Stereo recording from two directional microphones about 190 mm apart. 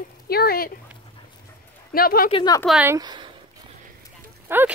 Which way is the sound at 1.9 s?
50° left (ahead or behind).